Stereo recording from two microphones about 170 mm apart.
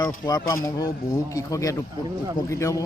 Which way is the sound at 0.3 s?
25° left (ahead or behind).